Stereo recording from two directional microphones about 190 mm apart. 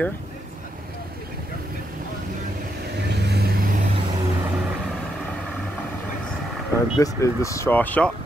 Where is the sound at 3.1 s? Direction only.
60° right (ahead or behind).